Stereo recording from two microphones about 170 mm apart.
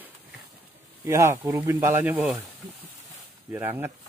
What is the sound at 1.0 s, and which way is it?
Speech, 15° right (ahead or behind).